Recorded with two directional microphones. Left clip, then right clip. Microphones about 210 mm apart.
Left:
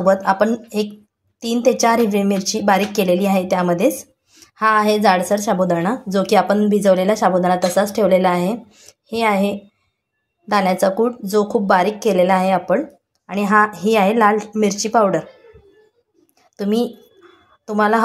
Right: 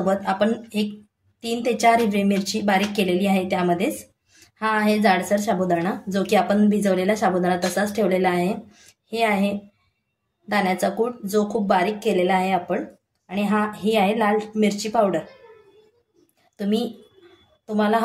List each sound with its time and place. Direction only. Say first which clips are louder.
0.0 s speech: left 6 dB; 25° left (ahead or behind)
17.7 s speech: left 5 dB; 20° left (ahead or behind)